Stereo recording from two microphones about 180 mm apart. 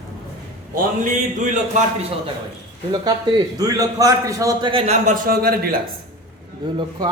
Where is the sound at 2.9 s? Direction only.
25° right (ahead or behind); by 5.8 s 55° right (ahead or behind).